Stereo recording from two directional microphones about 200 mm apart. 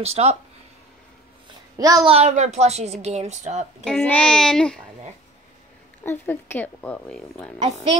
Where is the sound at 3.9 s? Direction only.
5° left (ahead or behind).